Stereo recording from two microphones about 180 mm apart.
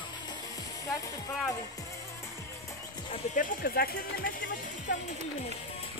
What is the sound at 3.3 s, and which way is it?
Speech, 55° left (ahead or behind).